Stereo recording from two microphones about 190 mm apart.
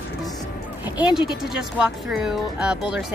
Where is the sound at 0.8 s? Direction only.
5° right (ahead or behind).